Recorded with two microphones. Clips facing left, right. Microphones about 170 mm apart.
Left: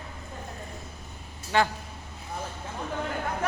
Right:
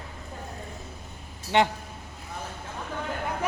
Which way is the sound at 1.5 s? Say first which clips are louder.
Right 2 dB; 20° right (ahead or behind).